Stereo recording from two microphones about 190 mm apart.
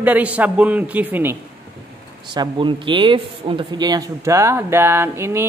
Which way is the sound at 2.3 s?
25° right (ahead or behind).